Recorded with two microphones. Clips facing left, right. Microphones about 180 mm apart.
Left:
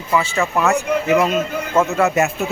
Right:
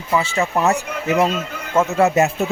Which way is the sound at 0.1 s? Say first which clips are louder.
Even; 25° right (ahead or behind).